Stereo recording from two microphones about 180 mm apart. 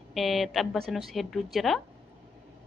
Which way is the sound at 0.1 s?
Centre (ahead or behind).